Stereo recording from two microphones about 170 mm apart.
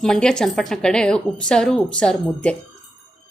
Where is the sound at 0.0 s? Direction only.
5° left (ahead or behind).